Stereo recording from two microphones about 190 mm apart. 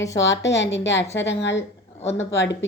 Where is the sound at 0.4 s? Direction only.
70° left (ahead or behind).